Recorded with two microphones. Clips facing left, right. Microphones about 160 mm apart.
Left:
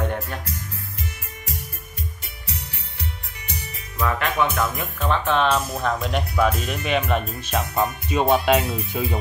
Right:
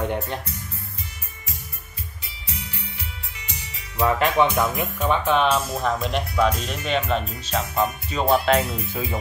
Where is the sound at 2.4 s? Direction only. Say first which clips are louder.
Even; 65° left (ahead or behind).